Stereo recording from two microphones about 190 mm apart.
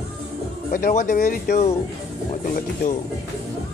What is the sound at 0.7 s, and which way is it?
Speech, 45° left (ahead or behind).